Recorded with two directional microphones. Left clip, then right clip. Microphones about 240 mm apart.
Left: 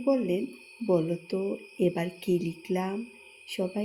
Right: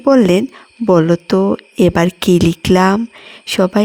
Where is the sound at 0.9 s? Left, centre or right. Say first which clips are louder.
Right 15 dB; right.